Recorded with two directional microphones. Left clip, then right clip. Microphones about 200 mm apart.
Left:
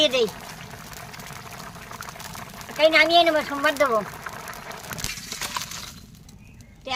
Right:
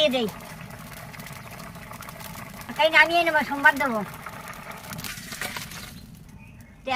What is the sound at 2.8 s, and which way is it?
Speech, 50° left (ahead or behind).